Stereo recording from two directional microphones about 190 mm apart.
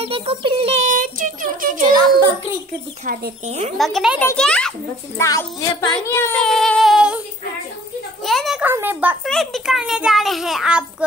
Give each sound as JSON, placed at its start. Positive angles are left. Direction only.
{"t": 0.0, "sound": "a child's voice", "side_deg": -30}
{"t": 3.1, "sound": "speech", "side_deg": -35}
{"t": 3.7, "sound": "a child's voice", "side_deg": 0}
{"t": 8.2, "sound": "a sound", "side_deg": 0}
{"t": 8.7, "sound": "a child's voice", "side_deg": -10}
{"t": 9.3, "sound": "a child's voice", "side_deg": 0}